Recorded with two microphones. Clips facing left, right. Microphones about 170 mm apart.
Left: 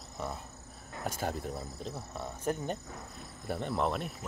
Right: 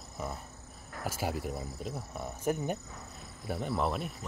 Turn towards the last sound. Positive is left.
turn(degrees=0)  # may be behind; listen again after turning